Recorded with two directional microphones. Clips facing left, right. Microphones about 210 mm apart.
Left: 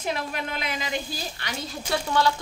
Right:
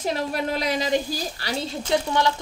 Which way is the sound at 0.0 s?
35° right (ahead or behind).